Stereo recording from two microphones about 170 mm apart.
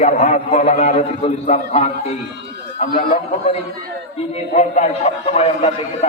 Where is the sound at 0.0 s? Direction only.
45° left (ahead or behind).